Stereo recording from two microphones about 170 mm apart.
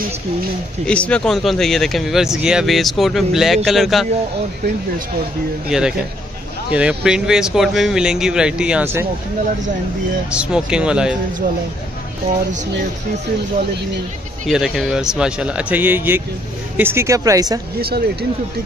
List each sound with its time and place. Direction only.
0.8 s speech: 5° left (ahead or behind)
5.7 s speech: 5° right (ahead or behind)
10.3 s speech: 5° right (ahead or behind)
14.4 s speech: centre (ahead or behind); by 17.6 s 20° right (ahead or behind)
17.7 s speech: 65° right (ahead or behind)